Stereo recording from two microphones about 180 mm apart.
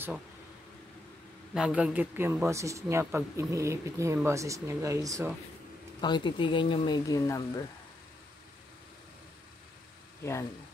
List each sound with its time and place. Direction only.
1.5 s speech: 5° right (ahead or behind)
5.9 s speech: 25° left (ahead or behind)